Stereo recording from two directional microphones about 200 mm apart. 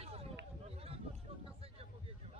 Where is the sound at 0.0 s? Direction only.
30° right (ahead or behind).